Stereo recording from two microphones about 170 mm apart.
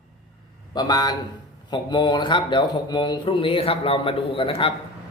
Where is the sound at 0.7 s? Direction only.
25° left (ahead or behind).